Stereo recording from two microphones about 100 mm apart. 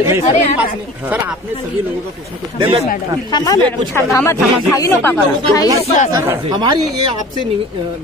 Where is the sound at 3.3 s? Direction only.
45° left (ahead or behind).